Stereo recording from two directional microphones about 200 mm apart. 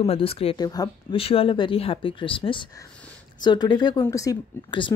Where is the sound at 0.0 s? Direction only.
30° left (ahead or behind).